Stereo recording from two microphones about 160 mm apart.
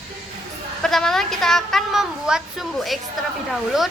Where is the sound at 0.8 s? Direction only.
Centre (ahead or behind).